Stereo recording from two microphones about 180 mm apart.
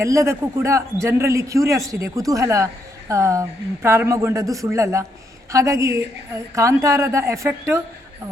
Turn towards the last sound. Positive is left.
turn(degrees=-15)  # may be behind; listen again after turning